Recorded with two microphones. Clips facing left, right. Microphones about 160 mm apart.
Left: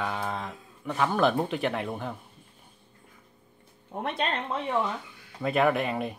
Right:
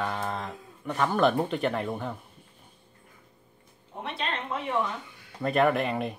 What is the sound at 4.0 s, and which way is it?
Speech, 50° left (ahead or behind).